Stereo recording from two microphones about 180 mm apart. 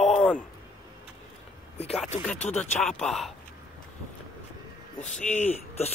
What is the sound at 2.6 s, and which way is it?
Speech, 5° left (ahead or behind).